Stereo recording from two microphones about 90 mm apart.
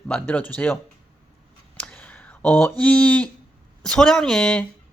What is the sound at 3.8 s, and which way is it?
Speech, 5° left (ahead or behind).